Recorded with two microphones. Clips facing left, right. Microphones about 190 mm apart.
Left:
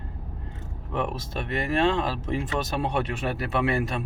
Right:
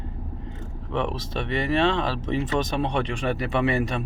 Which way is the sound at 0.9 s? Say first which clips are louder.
Right 2 dB; 5° left (ahead or behind).